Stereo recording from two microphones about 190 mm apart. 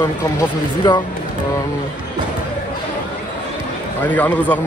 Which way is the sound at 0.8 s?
20° left (ahead or behind).